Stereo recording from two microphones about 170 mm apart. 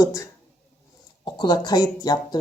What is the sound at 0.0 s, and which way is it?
Speech, 20° left (ahead or behind).